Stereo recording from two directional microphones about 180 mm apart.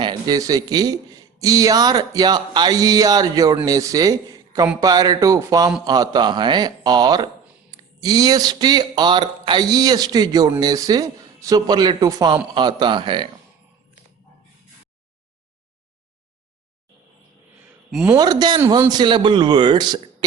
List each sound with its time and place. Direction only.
0.0 s a man's voice: 20° right (ahead or behind)
17.9 s a man's voice: 10° right (ahead or behind)
18.2 s speech: 20° right (ahead or behind)